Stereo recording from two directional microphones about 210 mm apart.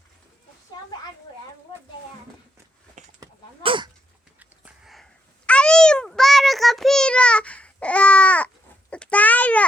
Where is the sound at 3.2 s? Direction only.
20° right (ahead or behind).